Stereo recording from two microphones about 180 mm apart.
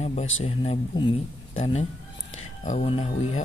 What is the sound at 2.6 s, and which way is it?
Speech, 40° left (ahead or behind).